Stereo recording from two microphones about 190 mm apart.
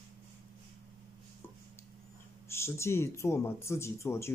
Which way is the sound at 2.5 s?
15° left (ahead or behind).